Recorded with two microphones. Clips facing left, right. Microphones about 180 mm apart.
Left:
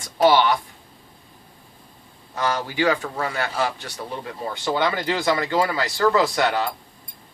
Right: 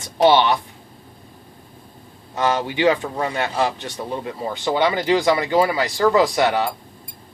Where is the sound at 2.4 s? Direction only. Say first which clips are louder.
Right 3 dB; 20° right (ahead or behind).